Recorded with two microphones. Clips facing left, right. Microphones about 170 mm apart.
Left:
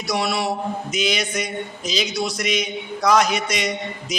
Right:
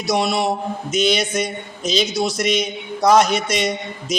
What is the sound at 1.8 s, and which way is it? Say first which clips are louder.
Mantra: right 6 dB; 25° right (ahead or behind).